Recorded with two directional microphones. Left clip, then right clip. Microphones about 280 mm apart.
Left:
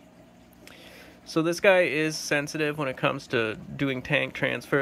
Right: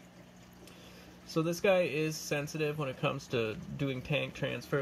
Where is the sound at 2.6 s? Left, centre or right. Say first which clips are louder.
Left 7 dB; left.